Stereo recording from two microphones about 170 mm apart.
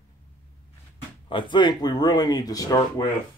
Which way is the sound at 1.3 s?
30° left (ahead or behind).